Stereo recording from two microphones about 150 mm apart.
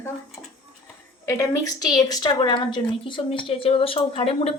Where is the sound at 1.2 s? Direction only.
20° left (ahead or behind).